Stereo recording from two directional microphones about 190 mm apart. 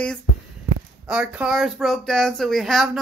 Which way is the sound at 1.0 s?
5° right (ahead or behind).